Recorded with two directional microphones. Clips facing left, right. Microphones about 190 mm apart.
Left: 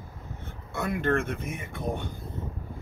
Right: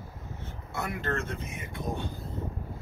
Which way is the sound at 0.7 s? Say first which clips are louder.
Left 6 dB; 55° left (ahead or behind).